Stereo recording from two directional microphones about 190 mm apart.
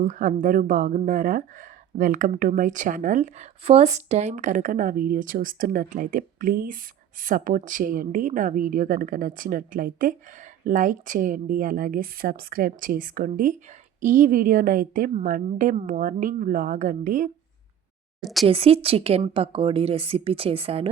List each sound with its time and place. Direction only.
0.0 s speech: 40° right (ahead or behind)
18.2 s speech: centre (ahead or behind)
18.4 s a woman's voice: 30° right (ahead or behind)